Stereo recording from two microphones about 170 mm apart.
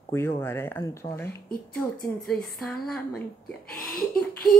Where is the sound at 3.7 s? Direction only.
60° left (ahead or behind).